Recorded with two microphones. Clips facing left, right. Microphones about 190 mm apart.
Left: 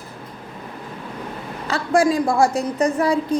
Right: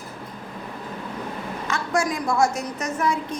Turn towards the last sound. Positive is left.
turn(degrees=35)  # may be behind; listen again after turning